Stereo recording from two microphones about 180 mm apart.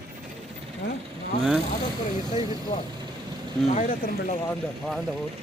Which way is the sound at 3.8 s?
45° left (ahead or behind).